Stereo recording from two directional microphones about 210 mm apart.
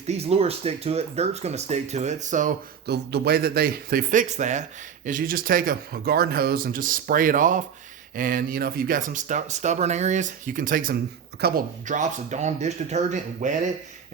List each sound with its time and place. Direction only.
0.1 s a man's voice: 30° right (ahead or behind); by 11.6 s 50° right (ahead or behind)
11.9 s speech: 35° right (ahead or behind)